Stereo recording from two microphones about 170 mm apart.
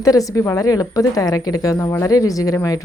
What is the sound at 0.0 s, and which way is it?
A woman's voice, 20° left (ahead or behind).